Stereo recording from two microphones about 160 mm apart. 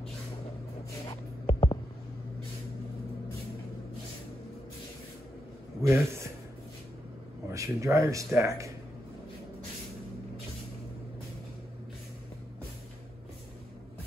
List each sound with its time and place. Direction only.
1.0 s a sound: 35° left (ahead or behind)
5.8 s a man's voice: 15° right (ahead or behind)
7.5 s speech: 20° right (ahead or behind)